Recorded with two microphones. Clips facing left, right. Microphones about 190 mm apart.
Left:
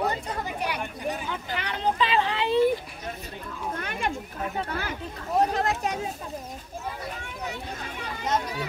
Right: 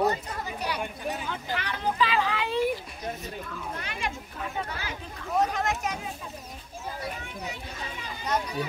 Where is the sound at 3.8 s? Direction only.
55° left (ahead or behind).